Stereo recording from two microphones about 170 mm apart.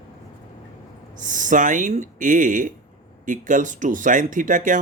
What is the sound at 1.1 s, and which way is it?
Speech, 50° right (ahead or behind).